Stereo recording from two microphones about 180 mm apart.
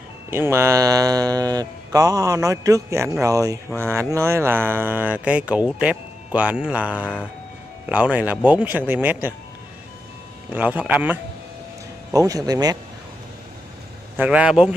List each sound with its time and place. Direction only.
0.3 s speech: 15° right (ahead or behind)
10.5 s speech: 10° right (ahead or behind)
12.1 s speech: 20° right (ahead or behind)
14.1 s speech: 10° right (ahead or behind)